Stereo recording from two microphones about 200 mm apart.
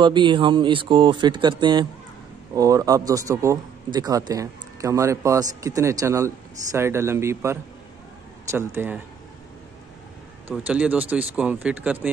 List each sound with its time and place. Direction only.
0.0 s speech: 25° right (ahead or behind)
10.5 s speech: 5° right (ahead or behind)